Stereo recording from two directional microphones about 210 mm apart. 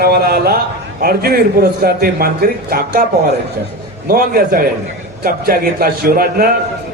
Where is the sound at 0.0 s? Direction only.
45° right (ahead or behind).